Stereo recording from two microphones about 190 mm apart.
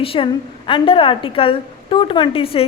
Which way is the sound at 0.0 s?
30° left (ahead or behind).